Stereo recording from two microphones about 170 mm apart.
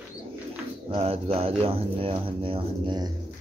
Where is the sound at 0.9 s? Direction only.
35° right (ahead or behind).